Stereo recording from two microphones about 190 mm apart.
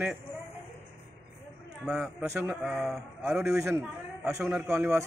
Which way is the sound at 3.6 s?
15° right (ahead or behind).